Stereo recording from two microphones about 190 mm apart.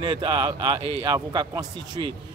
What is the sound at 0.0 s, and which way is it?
Speech, 25° right (ahead or behind).